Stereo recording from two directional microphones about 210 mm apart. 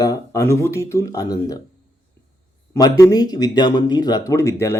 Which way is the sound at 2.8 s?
15° left (ahead or behind).